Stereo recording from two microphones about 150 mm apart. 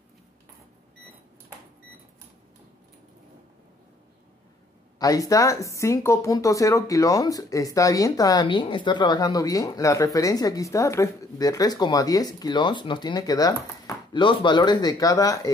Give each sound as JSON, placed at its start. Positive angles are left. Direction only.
{"t": 4.9, "sound": "speech", "side_deg": 25}